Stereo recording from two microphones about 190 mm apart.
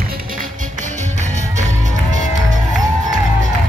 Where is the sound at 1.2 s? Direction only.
40° right (ahead or behind).